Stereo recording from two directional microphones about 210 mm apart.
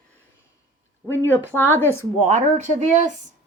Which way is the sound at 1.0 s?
10° left (ahead or behind).